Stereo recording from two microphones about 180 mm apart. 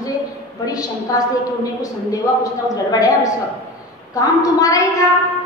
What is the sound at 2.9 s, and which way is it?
A woman's voice, 20° left (ahead or behind).